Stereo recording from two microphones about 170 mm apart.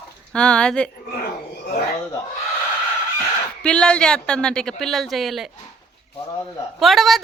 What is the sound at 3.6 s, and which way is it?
A woman's voice, 5° left (ahead or behind).